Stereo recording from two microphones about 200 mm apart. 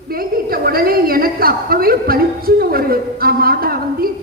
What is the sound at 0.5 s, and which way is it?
A man's voice, 50° right (ahead or behind).